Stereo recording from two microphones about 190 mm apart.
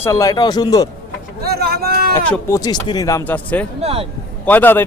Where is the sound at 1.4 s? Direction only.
55° right (ahead or behind).